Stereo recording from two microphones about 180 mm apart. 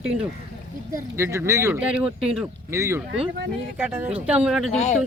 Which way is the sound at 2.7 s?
15° right (ahead or behind).